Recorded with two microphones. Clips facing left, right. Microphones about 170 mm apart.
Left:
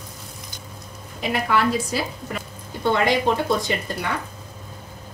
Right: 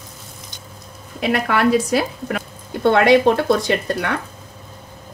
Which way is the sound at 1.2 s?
65° right (ahead or behind).